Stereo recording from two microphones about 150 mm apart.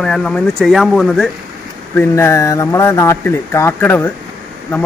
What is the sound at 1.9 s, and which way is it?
Speech, 15° left (ahead or behind).